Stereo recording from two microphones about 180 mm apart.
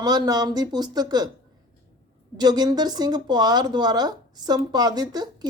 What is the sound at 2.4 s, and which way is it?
A woman's voice, 20° right (ahead or behind).